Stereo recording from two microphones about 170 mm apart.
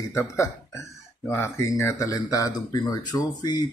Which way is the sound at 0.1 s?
15° left (ahead or behind).